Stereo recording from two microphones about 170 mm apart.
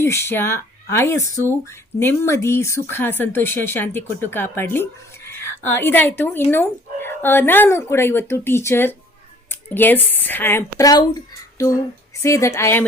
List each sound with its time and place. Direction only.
0.0 s a woman's voice: 15° left (ahead or behind)
10.8 s a woman's voice: 20° left (ahead or behind)